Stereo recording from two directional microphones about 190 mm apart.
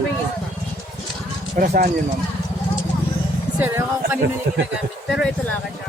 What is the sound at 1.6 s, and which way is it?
Speech, 45° right (ahead or behind).